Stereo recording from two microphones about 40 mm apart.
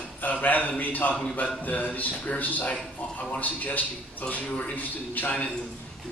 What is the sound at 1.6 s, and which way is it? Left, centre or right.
A man's voice, left.